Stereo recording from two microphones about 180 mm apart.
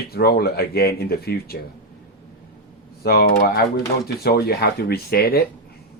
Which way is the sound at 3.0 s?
60° left (ahead or behind).